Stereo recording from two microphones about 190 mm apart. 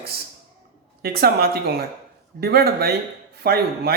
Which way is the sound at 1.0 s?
55° right (ahead or behind).